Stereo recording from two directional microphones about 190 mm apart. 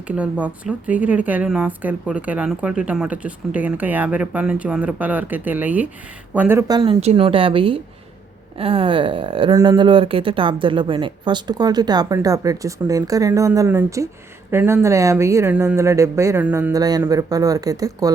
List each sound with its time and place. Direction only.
0.2 s a woman's voice: 5° right (ahead or behind)